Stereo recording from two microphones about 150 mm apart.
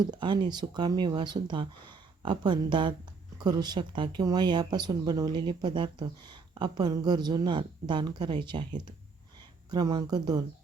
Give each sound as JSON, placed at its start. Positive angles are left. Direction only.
{"t": 0.0, "sound": "speech", "side_deg": -30}
{"t": 9.6, "sound": "speech", "side_deg": -25}